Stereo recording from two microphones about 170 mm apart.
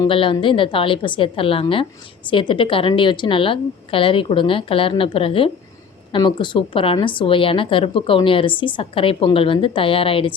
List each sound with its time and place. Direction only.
0.0 s a woman's voice: 30° left (ahead or behind)